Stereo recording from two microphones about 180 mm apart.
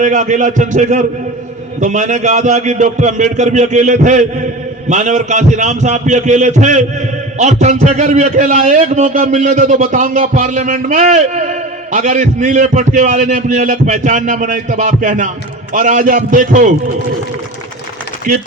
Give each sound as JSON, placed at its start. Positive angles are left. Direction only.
{"t": 0.0, "sound": "a man's voice", "side_deg": -45}